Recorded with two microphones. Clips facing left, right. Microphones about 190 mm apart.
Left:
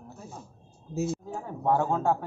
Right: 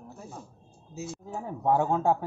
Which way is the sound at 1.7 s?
15° right (ahead or behind).